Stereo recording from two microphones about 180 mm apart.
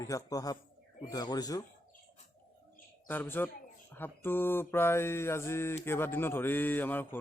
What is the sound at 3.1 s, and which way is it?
Mantra, 10° left (ahead or behind).